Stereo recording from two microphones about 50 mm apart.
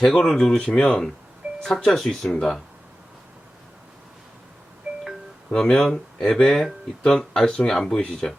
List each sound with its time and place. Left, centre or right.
0.0 s speech: centre
4.9 s music: centre
5.5 s speech: centre